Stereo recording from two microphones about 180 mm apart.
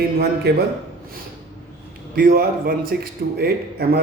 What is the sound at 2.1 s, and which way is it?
A man's voice, 55° right (ahead or behind).